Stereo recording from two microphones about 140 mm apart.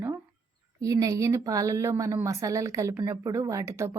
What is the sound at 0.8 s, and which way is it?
A woman's voice, 25° right (ahead or behind).